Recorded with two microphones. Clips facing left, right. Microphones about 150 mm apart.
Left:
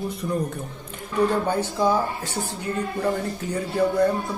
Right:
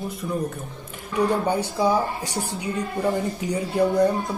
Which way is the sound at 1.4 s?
10° right (ahead or behind).